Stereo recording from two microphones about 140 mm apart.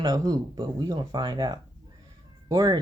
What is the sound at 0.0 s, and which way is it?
Speech, 30° right (ahead or behind).